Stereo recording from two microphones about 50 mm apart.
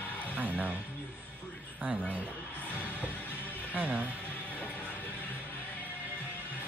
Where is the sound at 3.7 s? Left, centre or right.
Right.